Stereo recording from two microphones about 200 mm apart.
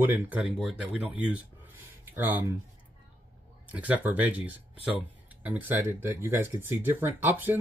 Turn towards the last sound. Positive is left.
turn(degrees=-10)  # may be behind; listen again after turning